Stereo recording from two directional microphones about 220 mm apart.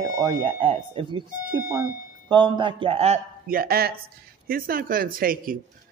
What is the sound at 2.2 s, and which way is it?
A man's voice, 20° right (ahead or behind).